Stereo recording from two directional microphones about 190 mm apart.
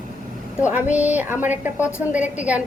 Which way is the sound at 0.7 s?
10° right (ahead or behind).